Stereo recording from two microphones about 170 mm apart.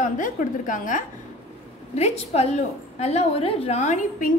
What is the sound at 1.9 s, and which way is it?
A woman's voice, 40° left (ahead or behind).